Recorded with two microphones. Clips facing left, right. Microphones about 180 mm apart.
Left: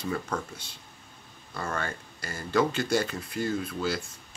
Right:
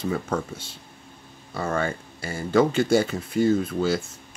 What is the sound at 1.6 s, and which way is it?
Speech, 10° right (ahead or behind).